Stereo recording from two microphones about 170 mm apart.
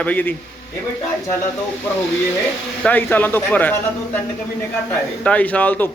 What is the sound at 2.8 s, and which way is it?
Speech, 10° left (ahead or behind).